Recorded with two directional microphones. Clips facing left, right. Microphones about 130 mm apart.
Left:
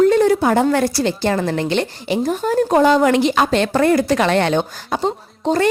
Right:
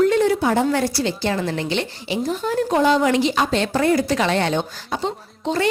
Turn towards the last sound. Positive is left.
turn(degrees=45)  # may be behind; listen again after turning